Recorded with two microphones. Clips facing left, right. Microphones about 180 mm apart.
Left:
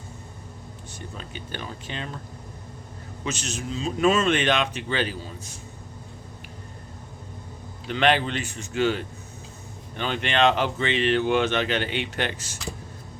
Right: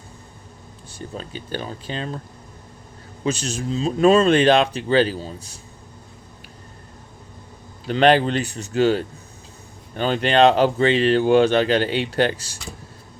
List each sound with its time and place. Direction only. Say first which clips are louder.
0.9 s speech: right 7 dB; 35° right (ahead or behind)
3.2 s speech: right 7 dB; 35° right (ahead or behind)
7.9 s speech: right 6 dB; 40° right (ahead or behind)